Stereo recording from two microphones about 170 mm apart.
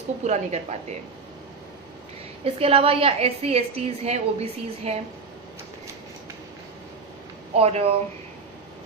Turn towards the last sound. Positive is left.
turn(degrees=-35)  # may be behind; listen again after turning